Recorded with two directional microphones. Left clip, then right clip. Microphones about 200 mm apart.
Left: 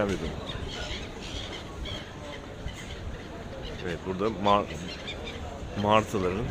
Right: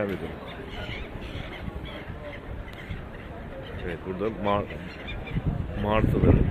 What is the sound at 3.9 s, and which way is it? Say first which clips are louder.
Speech: left 1 dB; 15° left (ahead or behind).